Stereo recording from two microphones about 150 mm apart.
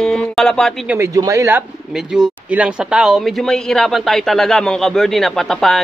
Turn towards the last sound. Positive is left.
turn(degrees=5)  # may be behind; listen again after turning